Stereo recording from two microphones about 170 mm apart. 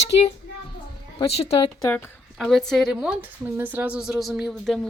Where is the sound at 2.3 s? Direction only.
Centre (ahead or behind).